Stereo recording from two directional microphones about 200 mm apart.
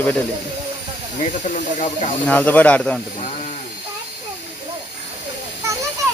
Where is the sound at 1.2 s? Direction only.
35° left (ahead or behind).